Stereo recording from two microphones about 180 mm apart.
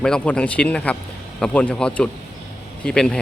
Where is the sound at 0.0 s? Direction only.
5° left (ahead or behind).